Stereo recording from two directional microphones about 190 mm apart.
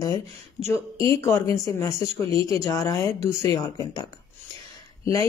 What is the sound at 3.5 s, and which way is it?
Speech, 20° left (ahead or behind).